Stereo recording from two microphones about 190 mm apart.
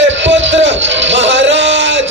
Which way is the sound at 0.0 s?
75° right (ahead or behind).